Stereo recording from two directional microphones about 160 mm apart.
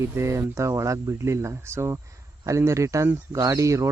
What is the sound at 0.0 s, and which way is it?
Speech, 20° right (ahead or behind).